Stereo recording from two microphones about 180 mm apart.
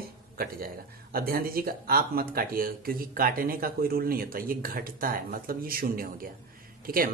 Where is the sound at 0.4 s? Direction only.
55° right (ahead or behind).